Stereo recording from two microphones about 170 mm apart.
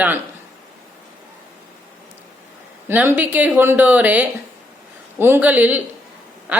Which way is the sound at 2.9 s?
10° right (ahead or behind).